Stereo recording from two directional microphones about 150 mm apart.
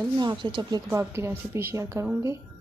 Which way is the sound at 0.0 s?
30° right (ahead or behind).